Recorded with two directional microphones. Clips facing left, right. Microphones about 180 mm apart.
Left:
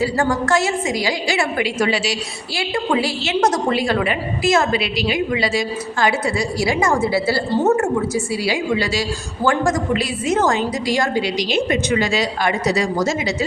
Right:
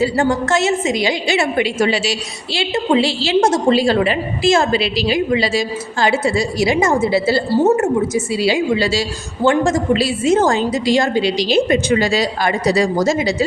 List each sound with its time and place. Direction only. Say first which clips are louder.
0.0 s a woman's voice: right 3 dB; 25° right (ahead or behind)